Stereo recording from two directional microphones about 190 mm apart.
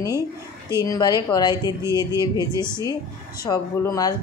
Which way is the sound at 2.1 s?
15° right (ahead or behind).